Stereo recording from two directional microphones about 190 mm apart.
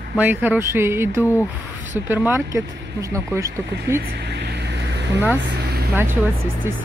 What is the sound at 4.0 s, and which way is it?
Vehicle, 60° right (ahead or behind).